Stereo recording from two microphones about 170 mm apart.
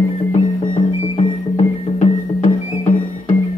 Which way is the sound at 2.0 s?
40° left (ahead or behind).